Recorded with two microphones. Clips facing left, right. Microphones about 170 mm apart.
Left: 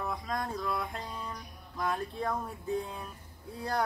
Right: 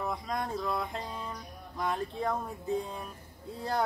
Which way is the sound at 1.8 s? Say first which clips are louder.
Right 1 dB; 20° right (ahead or behind).